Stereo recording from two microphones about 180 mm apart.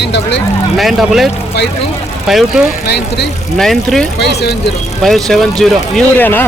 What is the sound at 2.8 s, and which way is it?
Speech, 65° left (ahead or behind).